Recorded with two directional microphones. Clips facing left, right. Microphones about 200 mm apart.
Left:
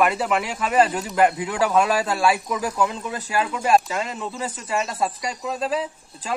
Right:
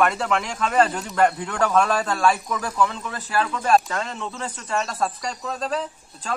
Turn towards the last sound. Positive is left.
turn(degrees=5)  # may be behind; listen again after turning